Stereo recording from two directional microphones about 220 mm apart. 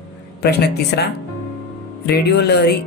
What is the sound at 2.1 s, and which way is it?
Speech, 50° left (ahead or behind).